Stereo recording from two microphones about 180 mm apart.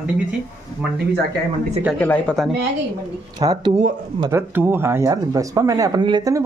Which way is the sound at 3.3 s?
25° right (ahead or behind).